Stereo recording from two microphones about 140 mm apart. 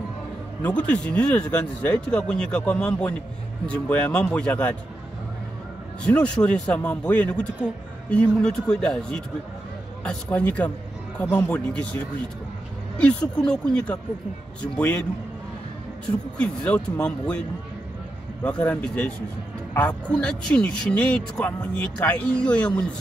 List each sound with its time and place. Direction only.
0.6 s a man's voice: 10° left (ahead or behind)
6.0 s a man's voice: 5° left (ahead or behind)
13.5 s a man's voice: 5° left (ahead or behind)
16.3 s a man's voice: 10° left (ahead or behind)
18.4 s a man's voice: 10° left (ahead or behind)